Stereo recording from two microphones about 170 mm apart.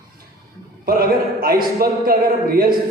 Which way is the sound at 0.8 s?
60° right (ahead or behind).